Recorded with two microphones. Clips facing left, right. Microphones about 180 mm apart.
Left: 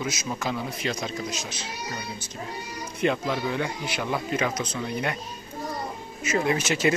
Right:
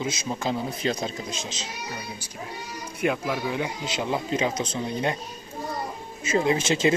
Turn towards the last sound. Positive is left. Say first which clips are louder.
# right 2 dB
turn(degrees=-25)  # may be behind; listen again after turning